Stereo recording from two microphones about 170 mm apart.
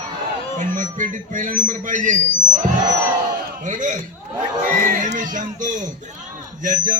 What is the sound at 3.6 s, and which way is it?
A man's voice, 50° right (ahead or behind).